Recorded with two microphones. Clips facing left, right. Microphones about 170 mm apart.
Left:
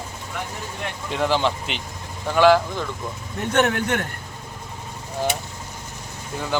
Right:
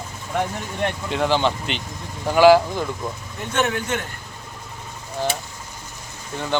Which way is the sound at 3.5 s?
60° left (ahead or behind).